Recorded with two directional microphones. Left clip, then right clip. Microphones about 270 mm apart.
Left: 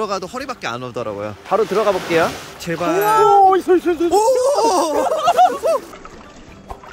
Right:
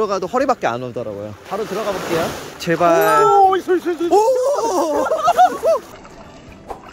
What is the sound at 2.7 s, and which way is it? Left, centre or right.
Speech, centre.